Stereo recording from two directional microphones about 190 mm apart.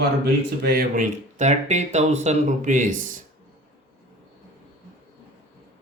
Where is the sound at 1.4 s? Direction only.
35° right (ahead or behind).